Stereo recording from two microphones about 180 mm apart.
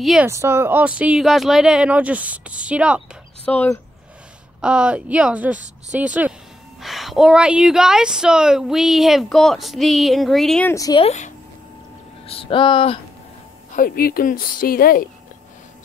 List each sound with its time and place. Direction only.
0.0 s speech: centre (ahead or behind)
0.3 s speech: 15° right (ahead or behind)
3.4 s speech: 10° left (ahead or behind)
4.6 s speech: 5° right (ahead or behind)
10.7 s speech: 20° left (ahead or behind)
11.0 s speech: 40° left (ahead or behind)
13.7 s speech: 55° left (ahead or behind)